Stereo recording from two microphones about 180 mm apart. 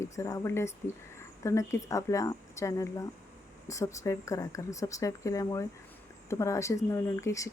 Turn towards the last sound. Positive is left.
turn(degrees=15)  # may be behind; listen again after turning